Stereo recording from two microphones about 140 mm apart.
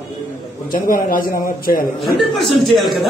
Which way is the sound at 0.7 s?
80° left.